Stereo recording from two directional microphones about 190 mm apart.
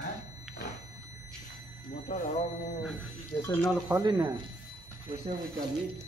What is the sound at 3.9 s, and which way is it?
Speech, 20° right (ahead or behind).